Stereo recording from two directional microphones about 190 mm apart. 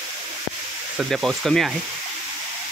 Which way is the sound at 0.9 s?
Centre (ahead or behind).